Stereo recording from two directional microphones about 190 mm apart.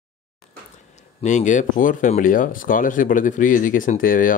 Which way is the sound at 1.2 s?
40° left (ahead or behind).